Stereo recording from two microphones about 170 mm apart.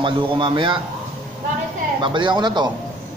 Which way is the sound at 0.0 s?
30° right (ahead or behind).